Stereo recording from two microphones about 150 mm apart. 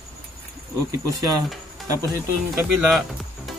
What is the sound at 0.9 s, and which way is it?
Speech, 25° right (ahead or behind).